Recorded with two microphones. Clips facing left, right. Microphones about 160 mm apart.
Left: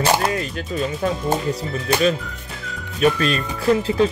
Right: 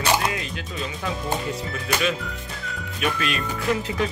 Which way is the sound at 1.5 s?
35° left (ahead or behind).